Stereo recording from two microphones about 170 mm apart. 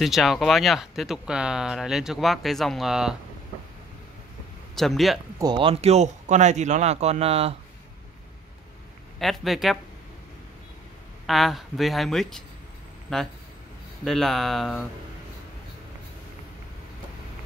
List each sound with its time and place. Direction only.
0.0 s speech: centre (ahead or behind)
4.7 s speech: centre (ahead or behind)
5.4 s speech: 30° right (ahead or behind)
9.2 s speech: centre (ahead or behind)
11.2 s speech: centre (ahead or behind)